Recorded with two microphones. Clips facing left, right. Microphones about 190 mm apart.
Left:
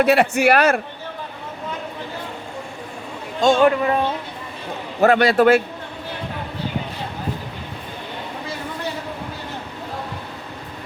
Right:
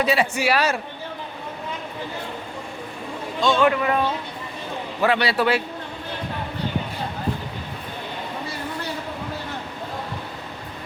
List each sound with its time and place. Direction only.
0.0 s a man's voice: 60° left (ahead or behind)
3.4 s speech: 40° left (ahead or behind)
4.9 s a man's voice: 45° left (ahead or behind)